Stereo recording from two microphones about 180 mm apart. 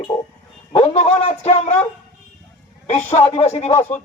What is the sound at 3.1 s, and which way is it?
Speech, 35° left (ahead or behind).